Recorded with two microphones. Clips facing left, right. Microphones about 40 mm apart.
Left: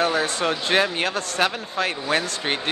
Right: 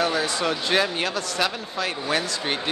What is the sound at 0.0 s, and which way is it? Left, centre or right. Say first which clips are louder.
Speech: left 2 dB; left.